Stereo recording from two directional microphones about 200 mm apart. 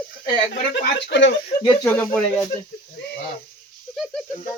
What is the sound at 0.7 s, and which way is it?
Speech, 60° left (ahead or behind).